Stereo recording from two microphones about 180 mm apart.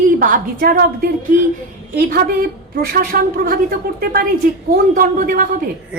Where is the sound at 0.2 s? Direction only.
50° right (ahead or behind).